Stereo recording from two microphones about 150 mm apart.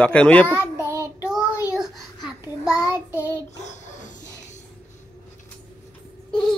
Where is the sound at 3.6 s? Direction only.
50° left (ahead or behind).